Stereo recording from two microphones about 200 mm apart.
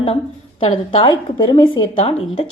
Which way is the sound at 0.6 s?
25° left (ahead or behind).